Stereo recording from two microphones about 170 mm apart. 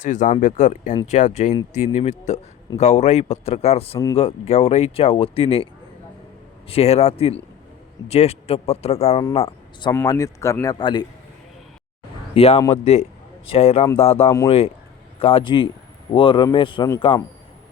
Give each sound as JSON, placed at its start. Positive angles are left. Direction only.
{"t": 0.0, "sound": "speech", "side_deg": 50}
{"t": 3.9, "sound": "speech", "side_deg": 15}
{"t": 4.2, "sound": "speech", "side_deg": 40}
{"t": 6.7, "sound": "speech", "side_deg": 35}
{"t": 10.1, "sound": "speech", "side_deg": 20}
{"t": 12.3, "sound": "speech", "side_deg": 35}